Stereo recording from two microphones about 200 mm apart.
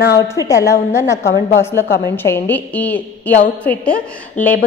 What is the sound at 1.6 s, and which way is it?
A woman's voice, 10° left (ahead or behind).